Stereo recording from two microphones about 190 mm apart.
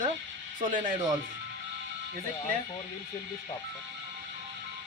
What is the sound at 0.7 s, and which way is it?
Speech, 40° right (ahead or behind).